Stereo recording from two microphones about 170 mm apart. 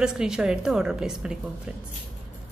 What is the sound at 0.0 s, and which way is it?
Speech, 5° right (ahead or behind).